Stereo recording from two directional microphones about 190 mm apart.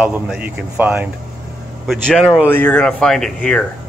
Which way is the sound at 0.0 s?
10° right (ahead or behind).